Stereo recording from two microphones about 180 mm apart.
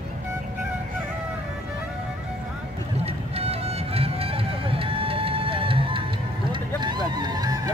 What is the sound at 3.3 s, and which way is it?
Music, 35° right (ahead or behind).